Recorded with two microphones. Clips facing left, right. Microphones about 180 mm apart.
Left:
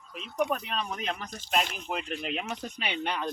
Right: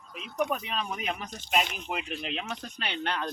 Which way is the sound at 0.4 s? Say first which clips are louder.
Even; centre (ahead or behind).